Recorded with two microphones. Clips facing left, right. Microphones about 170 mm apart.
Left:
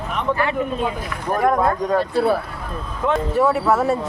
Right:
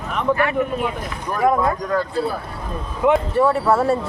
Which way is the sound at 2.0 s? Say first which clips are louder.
Left 5 dB; 70° left (ahead or behind).